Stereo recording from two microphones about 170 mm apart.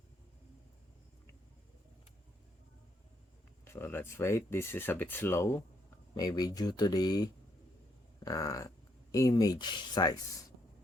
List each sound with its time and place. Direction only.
3.6 s speech: 15° left (ahead or behind)